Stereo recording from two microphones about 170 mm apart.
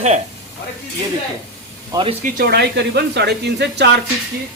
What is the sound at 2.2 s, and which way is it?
Speech, 65° right (ahead or behind).